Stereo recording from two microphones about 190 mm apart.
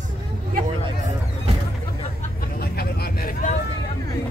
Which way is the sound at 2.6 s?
55° left (ahead or behind).